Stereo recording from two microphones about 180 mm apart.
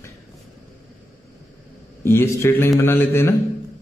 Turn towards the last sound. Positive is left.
turn(degrees=15)  # may be behind; listen again after turning